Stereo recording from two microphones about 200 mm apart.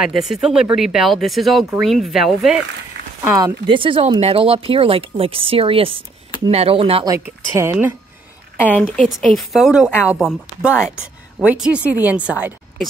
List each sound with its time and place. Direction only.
0.0 s speech: centre (ahead or behind)
2.9 s a sound: 60° right (ahead or behind)
3.3 s speech: 15° right (ahead or behind)
7.2 s a woman's voice: 10° right (ahead or behind)
8.5 s a woman's voice: 10° left (ahead or behind)